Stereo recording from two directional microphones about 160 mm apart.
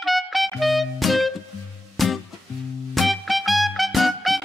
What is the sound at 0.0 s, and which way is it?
Music, centre (ahead or behind).